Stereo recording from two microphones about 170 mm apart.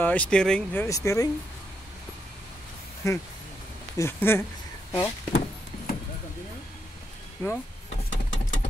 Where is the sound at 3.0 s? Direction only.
20° left (ahead or behind).